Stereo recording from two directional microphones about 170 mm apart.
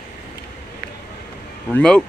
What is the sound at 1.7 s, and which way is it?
Speech, 5° left (ahead or behind).